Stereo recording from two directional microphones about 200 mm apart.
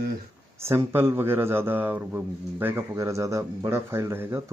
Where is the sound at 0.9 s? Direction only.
10° right (ahead or behind).